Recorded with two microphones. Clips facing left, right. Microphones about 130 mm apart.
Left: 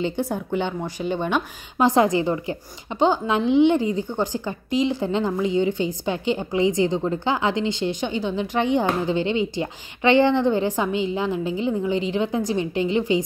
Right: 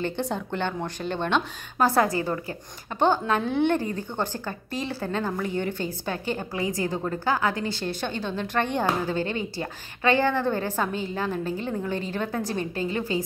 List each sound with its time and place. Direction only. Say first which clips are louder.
0.0 s speech: left 3 dB; 10° left (ahead or behind)